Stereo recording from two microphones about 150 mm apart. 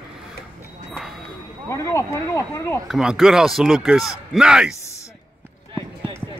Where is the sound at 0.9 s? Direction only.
Centre (ahead or behind).